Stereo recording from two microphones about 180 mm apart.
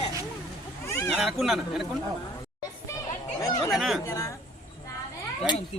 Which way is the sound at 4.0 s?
15° left (ahead or behind).